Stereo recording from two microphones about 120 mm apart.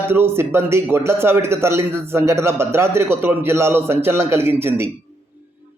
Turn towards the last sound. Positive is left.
turn(degrees=-20)  # may be behind; listen again after turning